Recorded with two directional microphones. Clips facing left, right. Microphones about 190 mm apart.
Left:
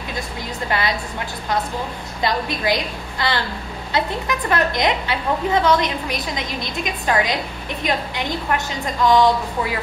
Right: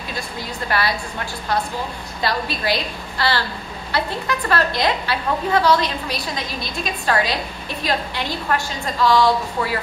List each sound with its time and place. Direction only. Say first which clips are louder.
0.7 s a woman's voice: even; 20° left (ahead or behind)
2.2 s a woman's voice: left 1 dB; 20° left (ahead or behind)